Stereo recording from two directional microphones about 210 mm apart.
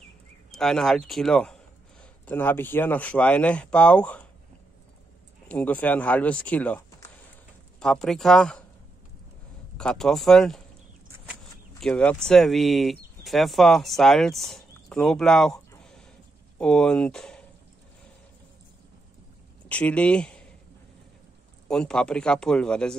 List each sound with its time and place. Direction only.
0.5 s speech: centre (ahead or behind)
5.5 s speech: 5° left (ahead or behind)
9.8 s speech: 5° left (ahead or behind)
11.8 s speech: 5° left (ahead or behind)
19.7 s speech: 5° left (ahead or behind)
21.6 s speech: 5° left (ahead or behind)